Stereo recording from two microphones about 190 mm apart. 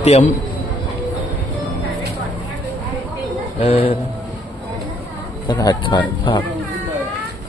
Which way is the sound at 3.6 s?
30° left (ahead or behind).